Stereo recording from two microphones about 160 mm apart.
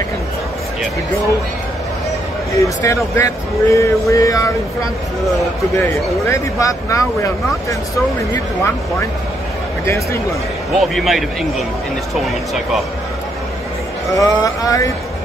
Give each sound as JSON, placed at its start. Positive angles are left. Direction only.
{"t": 2.6, "sound": "speech", "side_deg": 20}
{"t": 5.8, "sound": "speech", "side_deg": 15}
{"t": 10.7, "sound": "speech", "side_deg": 0}
{"t": 14.1, "sound": "speech", "side_deg": 20}